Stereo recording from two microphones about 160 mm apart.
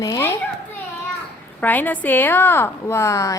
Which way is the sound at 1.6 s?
10° left (ahead or behind).